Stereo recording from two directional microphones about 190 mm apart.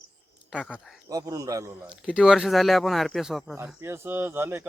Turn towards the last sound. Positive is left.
turn(degrees=-10)  # may be behind; listen again after turning